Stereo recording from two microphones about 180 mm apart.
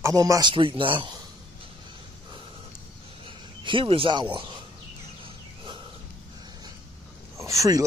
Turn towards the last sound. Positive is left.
turn(degrees=-20)  # may be behind; listen again after turning